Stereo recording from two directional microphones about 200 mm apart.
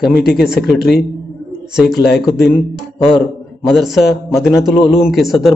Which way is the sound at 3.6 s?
Centre (ahead or behind).